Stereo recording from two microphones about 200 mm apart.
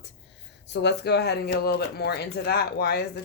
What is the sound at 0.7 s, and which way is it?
A woman's voice, 60° left (ahead or behind).